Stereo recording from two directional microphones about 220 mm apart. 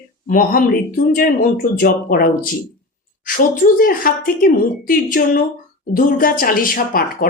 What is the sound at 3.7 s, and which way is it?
Speech, 40° left (ahead or behind).